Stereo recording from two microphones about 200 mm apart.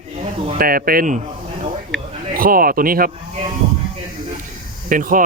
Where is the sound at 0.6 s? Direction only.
45° right (ahead or behind).